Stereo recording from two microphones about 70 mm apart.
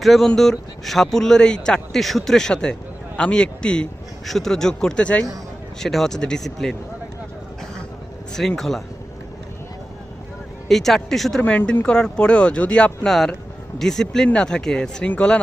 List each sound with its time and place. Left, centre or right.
0.0 s a man's voice: centre
5.8 s speech: centre
8.3 s speech: centre
10.7 s speech: centre
11.4 s a man's voice: centre
13.1 s a man's voice: centre